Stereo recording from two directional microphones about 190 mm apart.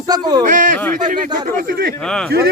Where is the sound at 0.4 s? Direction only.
40° right (ahead or behind).